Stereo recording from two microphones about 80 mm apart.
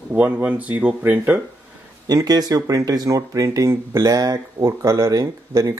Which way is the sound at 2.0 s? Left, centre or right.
Right.